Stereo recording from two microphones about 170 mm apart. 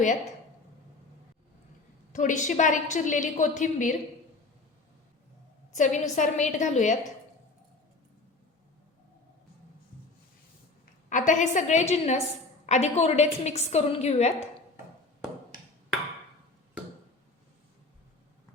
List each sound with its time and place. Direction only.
2.1 s a woman's voice: 45° left (ahead or behind)
5.7 s a woman's voice: 45° left (ahead or behind)
11.1 s a woman's voice: 45° left (ahead or behind)